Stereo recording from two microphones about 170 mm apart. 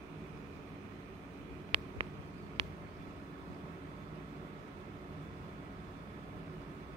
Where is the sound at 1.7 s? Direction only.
30° right (ahead or behind).